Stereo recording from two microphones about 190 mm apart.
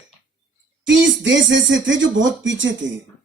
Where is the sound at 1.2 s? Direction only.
75° right (ahead or behind).